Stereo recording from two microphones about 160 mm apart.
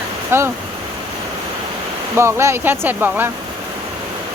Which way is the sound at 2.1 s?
15° right (ahead or behind).